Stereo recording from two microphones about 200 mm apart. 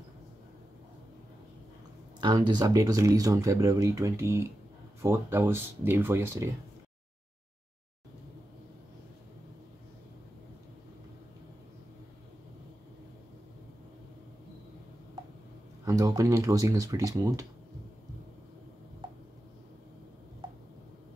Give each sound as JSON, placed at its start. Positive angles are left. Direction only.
{"t": 2.1, "sound": "speech", "side_deg": -20}
{"t": 15.8, "sound": "speech", "side_deg": -15}